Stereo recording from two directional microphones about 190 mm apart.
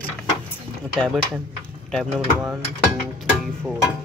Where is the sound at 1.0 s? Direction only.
Centre (ahead or behind).